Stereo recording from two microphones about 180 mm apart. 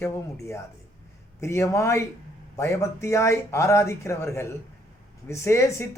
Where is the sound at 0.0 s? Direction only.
15° left (ahead or behind).